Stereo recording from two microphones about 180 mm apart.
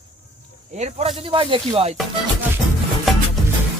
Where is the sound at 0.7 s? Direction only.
35° right (ahead or behind).